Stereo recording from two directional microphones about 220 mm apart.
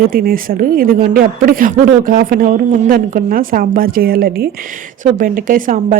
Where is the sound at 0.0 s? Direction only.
45° right (ahead or behind).